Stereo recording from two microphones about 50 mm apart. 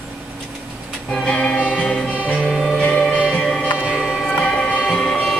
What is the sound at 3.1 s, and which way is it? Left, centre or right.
Music, centre.